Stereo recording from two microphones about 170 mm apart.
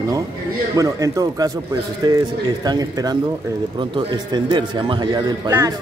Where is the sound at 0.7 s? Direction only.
20° right (ahead or behind).